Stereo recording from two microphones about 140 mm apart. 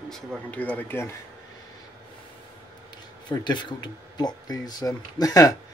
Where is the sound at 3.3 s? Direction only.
30° left (ahead or behind).